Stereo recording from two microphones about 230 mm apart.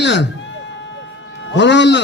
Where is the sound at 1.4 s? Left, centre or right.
Left.